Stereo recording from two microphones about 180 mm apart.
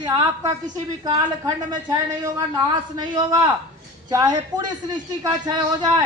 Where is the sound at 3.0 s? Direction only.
25° right (ahead or behind).